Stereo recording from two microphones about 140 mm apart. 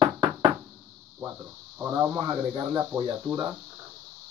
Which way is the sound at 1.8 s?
20° right (ahead or behind).